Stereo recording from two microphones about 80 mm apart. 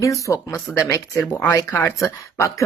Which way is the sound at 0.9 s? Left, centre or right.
Left.